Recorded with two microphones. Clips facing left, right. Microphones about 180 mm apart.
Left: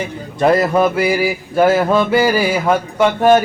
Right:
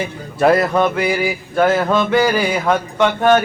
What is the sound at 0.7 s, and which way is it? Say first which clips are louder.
Mantra: left 2 dB; 5° left (ahead or behind).